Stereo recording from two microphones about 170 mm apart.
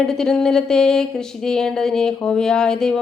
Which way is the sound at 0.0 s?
5° left (ahead or behind).